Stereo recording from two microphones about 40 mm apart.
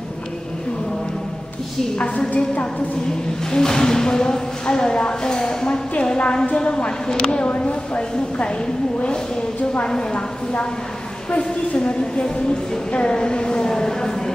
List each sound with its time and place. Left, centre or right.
2.0 s a woman's voice: left
3.5 s speech: centre
5.7 s a woman's voice: left
7.3 s a woman's voice: left
10.1 s a woman's voice: left